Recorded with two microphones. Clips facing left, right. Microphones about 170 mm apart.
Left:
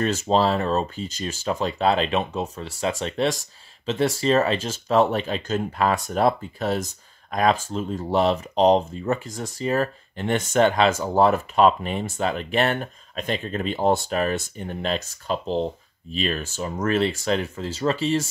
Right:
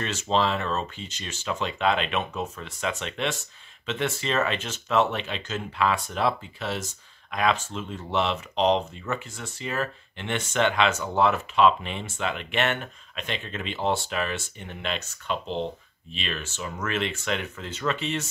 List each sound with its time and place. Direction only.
0.0 s speech: 40° left (ahead or behind)